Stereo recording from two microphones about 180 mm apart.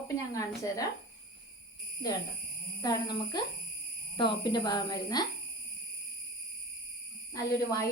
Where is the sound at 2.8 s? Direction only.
20° left (ahead or behind).